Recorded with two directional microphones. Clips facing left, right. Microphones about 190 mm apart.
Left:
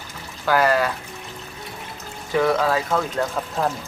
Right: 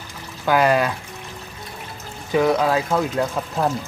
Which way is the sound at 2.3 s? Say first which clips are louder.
Right 2 dB; 15° right (ahead or behind).